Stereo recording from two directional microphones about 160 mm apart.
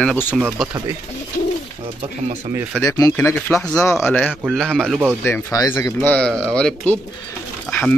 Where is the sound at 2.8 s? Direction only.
20° left (ahead or behind); by 5.0 s centre (ahead or behind).